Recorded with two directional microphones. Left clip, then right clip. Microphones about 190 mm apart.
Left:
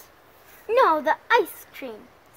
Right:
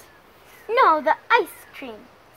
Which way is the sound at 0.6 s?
5° left (ahead or behind).